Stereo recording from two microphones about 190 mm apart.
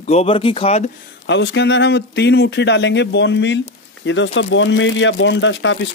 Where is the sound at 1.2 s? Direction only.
70° left (ahead or behind).